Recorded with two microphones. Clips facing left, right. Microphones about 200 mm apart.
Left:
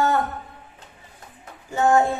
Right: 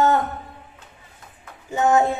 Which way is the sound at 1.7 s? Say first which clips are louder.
Even; 20° right (ahead or behind).